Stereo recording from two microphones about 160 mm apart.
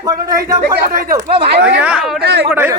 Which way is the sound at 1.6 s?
10° right (ahead or behind).